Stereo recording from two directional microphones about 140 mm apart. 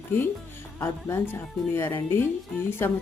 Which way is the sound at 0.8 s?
15° left (ahead or behind).